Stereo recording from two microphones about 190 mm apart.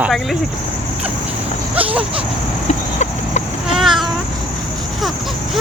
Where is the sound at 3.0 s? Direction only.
35° left (ahead or behind).